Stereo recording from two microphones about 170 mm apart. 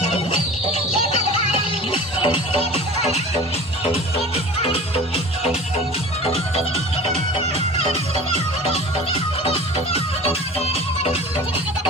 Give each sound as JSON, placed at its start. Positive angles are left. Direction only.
{"t": 1.1, "sound": "music", "side_deg": 30}
{"t": 4.6, "sound": "music", "side_deg": 35}
{"t": 9.4, "sound": "music", "side_deg": 35}